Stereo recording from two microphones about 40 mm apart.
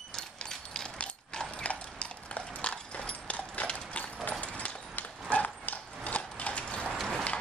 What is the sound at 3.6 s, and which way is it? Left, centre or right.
Clip-clop, left.